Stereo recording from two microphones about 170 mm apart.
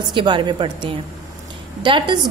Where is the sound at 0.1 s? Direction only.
25° right (ahead or behind).